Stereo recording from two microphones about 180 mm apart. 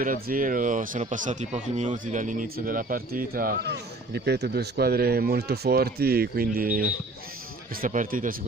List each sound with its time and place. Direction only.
0.0 s speech: 50° right (ahead or behind)